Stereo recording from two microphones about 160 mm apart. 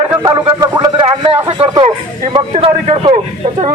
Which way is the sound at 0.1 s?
20° right (ahead or behind).